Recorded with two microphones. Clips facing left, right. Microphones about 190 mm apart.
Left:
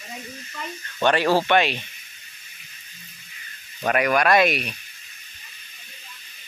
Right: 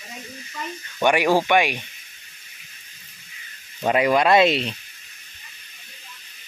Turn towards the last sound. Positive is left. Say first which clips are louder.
# right 2 dB
turn(degrees=-25)  # may be behind; listen again after turning